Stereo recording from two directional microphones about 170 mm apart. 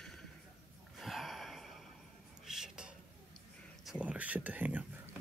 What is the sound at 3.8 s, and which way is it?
Speech, 5° right (ahead or behind).